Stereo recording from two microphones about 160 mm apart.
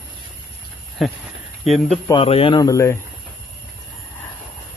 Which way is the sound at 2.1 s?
35° left (ahead or behind).